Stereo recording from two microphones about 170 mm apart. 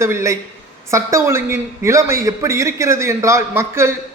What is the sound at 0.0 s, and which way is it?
A man's voice, 15° right (ahead or behind).